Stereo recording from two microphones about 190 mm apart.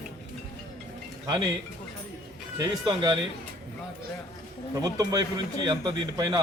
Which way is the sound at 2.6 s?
20° right (ahead or behind).